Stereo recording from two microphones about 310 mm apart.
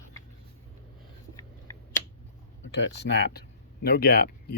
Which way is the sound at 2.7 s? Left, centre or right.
Left.